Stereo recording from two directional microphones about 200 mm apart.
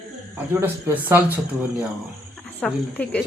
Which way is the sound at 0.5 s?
10° right (ahead or behind).